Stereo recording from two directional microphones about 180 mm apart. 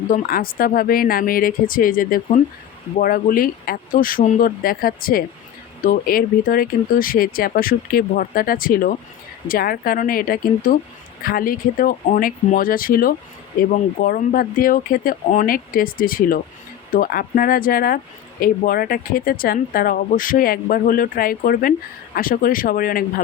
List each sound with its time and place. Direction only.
0.1 s speech: 50° left (ahead or behind)